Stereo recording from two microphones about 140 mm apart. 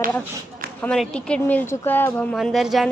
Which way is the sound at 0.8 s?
5° left (ahead or behind).